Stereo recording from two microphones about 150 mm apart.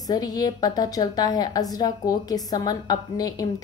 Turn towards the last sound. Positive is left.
turn(degrees=25)  # may be behind; listen again after turning